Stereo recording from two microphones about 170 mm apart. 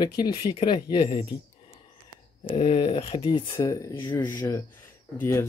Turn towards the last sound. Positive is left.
turn(degrees=15)  # may be behind; listen again after turning